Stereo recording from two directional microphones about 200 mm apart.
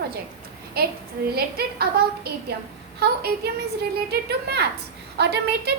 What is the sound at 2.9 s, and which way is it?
Speech, 55° right (ahead or behind).